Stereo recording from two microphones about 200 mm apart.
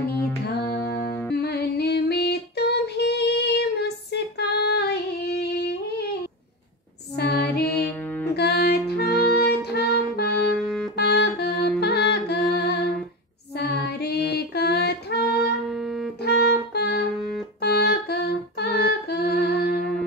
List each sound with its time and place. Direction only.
0.7 s music: 10° left (ahead or behind)
1.3 s music: 55° left (ahead or behind)
7.2 s music: 50° left (ahead or behind)
7.8 s music: 10° left (ahead or behind)
8.4 s music: 55° left (ahead or behind)
10.6 s music: centre (ahead or behind)
11.0 s music: 55° left (ahead or behind)
15.7 s music: centre (ahead or behind)
16.2 s music: 55° left (ahead or behind)
17.1 s music: centre (ahead or behind)
17.6 s music: 55° left (ahead or behind)
19.8 s music: 5° left (ahead or behind)